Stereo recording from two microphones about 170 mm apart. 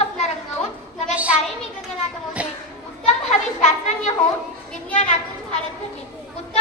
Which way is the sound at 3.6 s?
45° left (ahead or behind).